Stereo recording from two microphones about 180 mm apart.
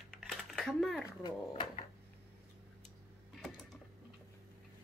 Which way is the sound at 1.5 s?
35° left (ahead or behind).